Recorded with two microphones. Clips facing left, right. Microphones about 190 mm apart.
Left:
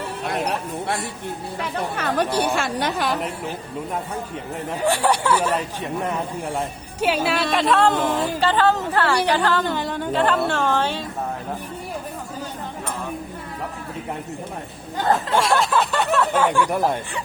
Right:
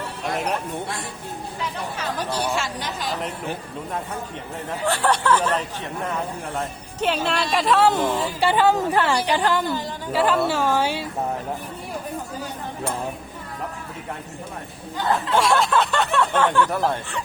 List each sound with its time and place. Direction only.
0.4 s a sound: centre (ahead or behind)
2.0 s a woman's voice: 60° left (ahead or behind)
4.9 s a woman's voice: 10° left (ahead or behind); by 9.6 s 15° right (ahead or behind)
9.6 s a woman's voice: 65° left (ahead or behind)
10.1 s a woman's voice: 5° right (ahead or behind)
15.4 s a sound: centre (ahead or behind)
16.1 s speech: 5° left (ahead or behind)